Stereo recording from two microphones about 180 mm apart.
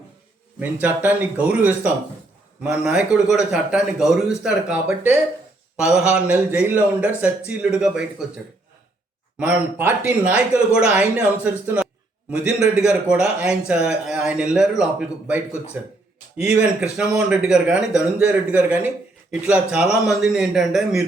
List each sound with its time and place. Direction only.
0.6 s a man's voice: 10° right (ahead or behind)
9.4 s a man's voice: 5° right (ahead or behind)